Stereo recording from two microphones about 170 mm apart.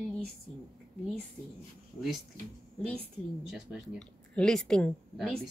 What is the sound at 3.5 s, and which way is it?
Speech, centre (ahead or behind).